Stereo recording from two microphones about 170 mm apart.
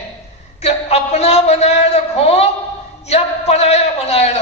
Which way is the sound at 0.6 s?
40° left (ahead or behind).